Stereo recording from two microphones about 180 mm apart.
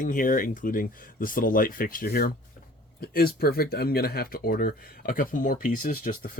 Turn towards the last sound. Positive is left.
turn(degrees=50)  # may be behind; listen again after turning